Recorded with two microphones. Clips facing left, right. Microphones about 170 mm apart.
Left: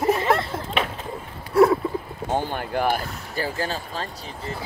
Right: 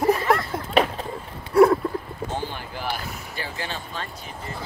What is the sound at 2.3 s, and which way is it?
Speech, 50° left (ahead or behind).